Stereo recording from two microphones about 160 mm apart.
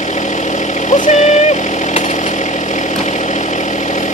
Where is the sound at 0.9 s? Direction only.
45° left (ahead or behind).